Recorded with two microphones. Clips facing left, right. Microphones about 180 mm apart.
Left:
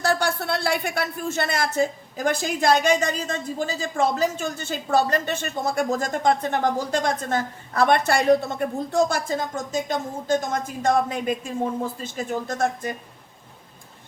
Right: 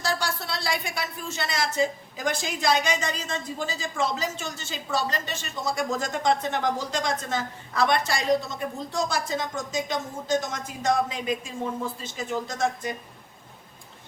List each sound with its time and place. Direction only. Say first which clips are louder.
0.0 s speech: left 6 dB; 55° left (ahead or behind)